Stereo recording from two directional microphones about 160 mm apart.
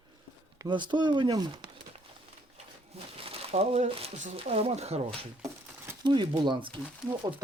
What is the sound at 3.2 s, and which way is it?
Speech, 35° right (ahead or behind).